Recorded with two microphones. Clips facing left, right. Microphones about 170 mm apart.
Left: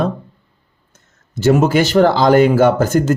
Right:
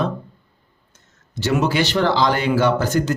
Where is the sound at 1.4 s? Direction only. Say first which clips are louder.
Left 7 dB; 45° left (ahead or behind).